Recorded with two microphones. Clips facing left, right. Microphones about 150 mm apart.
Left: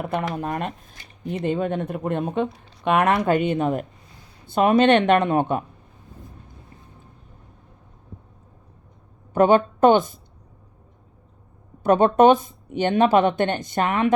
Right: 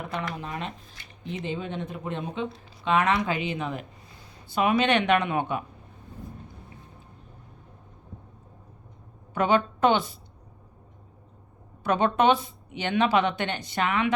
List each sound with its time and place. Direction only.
0.0 s speech: 55° left (ahead or behind)
9.3 s speech: 45° left (ahead or behind)
11.8 s speech: 45° left (ahead or behind)